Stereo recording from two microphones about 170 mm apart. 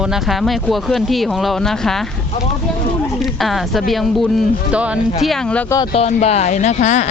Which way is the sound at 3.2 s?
Centre (ahead or behind).